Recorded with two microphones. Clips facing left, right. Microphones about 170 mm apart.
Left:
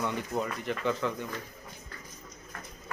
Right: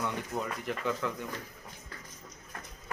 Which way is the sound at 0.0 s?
Centre (ahead or behind).